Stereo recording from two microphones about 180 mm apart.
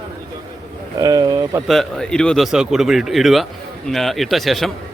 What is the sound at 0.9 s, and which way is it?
Speech, 20° right (ahead or behind).